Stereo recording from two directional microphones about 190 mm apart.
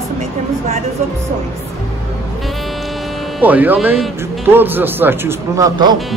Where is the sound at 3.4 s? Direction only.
10° right (ahead or behind).